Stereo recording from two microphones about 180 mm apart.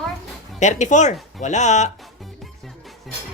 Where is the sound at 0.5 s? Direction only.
40° left (ahead or behind).